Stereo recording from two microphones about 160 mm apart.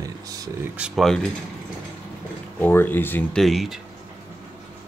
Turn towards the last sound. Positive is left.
turn(degrees=0)  # may be behind; listen again after turning